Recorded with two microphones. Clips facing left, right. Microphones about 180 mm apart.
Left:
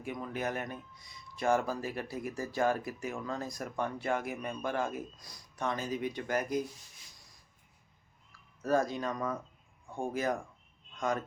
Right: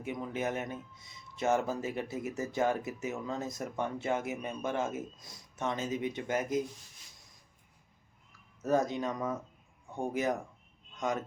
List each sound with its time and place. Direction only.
0.0 s speech: 20° right (ahead or behind)
8.3 s speech: 20° right (ahead or behind)